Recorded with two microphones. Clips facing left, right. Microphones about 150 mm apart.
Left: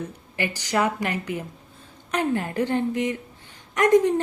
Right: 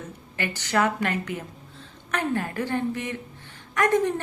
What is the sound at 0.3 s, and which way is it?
A woman's voice, 15° left (ahead or behind).